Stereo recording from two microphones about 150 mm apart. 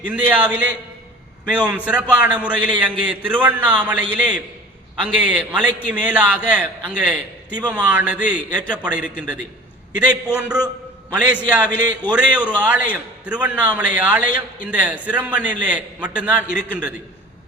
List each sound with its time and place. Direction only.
0.0 s a man's voice: 10° right (ahead or behind)
10.3 s a man's voice: 5° right (ahead or behind)